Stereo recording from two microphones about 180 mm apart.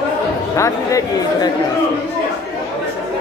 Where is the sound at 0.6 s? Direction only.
20° left (ahead or behind).